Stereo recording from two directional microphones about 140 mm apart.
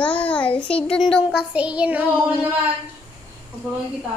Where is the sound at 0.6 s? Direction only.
40° left (ahead or behind).